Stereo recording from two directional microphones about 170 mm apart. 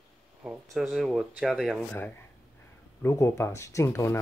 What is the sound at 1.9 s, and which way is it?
Speech, 10° left (ahead or behind).